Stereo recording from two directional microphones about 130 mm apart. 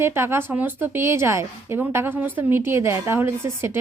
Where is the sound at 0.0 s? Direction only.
20° right (ahead or behind).